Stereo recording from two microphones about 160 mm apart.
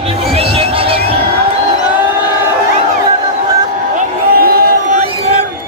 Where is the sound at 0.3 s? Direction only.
35° right (ahead or behind).